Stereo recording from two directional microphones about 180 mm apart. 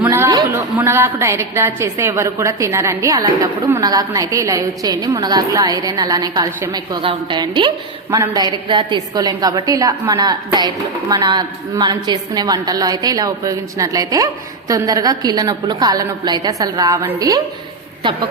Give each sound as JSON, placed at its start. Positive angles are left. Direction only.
{"t": 0.0, "sound": "a woman's voice", "side_deg": -15}